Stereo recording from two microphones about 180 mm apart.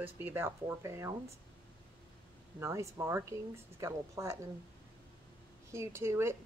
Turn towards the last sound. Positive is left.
turn(degrees=-15)  # may be behind; listen again after turning